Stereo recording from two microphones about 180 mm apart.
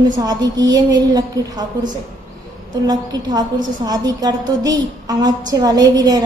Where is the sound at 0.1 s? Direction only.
20° right (ahead or behind).